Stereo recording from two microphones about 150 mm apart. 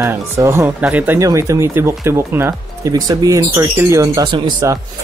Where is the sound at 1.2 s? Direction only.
20° right (ahead or behind).